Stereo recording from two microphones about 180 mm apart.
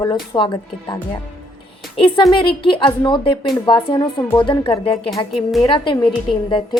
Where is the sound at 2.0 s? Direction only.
25° left (ahead or behind).